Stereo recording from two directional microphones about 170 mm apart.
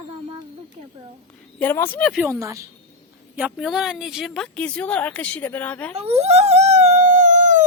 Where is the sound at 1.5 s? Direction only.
10° left (ahead or behind).